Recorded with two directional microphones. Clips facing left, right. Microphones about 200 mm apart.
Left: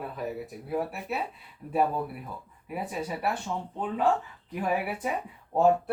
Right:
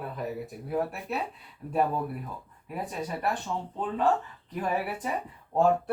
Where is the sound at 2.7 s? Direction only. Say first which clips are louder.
Left 1 dB; 5° left (ahead or behind).